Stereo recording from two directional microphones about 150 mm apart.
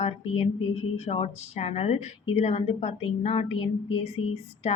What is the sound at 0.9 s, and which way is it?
A woman's voice, 45° left (ahead or behind).